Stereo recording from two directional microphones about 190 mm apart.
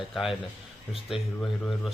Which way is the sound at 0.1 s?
Centre (ahead or behind).